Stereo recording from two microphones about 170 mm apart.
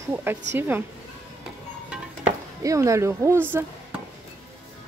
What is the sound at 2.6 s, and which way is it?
Speech, 20° right (ahead or behind).